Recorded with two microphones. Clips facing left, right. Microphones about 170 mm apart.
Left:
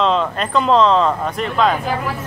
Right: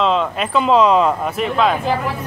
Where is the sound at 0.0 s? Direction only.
Centre (ahead or behind).